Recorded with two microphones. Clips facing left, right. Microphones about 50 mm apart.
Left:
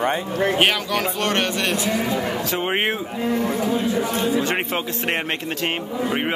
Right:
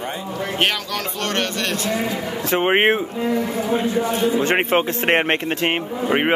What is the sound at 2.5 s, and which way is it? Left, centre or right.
Speech, right.